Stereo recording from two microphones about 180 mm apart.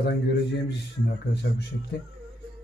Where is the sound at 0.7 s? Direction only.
65° left (ahead or behind).